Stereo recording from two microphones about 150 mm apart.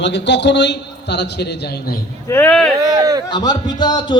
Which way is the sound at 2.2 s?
15° left (ahead or behind).